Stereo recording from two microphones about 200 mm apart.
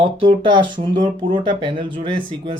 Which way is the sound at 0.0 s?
25° right (ahead or behind).